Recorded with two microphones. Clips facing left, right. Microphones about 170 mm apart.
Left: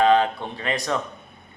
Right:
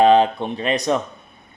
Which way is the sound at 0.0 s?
20° right (ahead or behind).